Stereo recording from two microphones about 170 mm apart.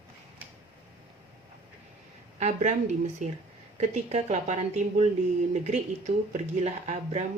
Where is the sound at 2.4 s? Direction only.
45° right (ahead or behind).